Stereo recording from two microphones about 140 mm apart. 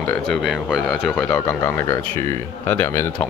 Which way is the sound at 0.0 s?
15° left (ahead or behind).